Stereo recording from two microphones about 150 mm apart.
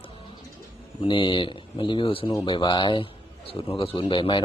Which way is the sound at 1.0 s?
35° left (ahead or behind).